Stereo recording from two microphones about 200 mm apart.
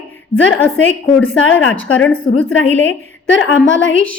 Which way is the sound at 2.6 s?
70° left (ahead or behind).